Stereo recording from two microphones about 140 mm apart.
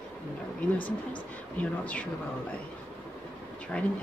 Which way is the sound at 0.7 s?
35° left (ahead or behind).